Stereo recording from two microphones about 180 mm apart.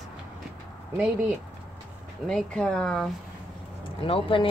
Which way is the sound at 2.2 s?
5° left (ahead or behind).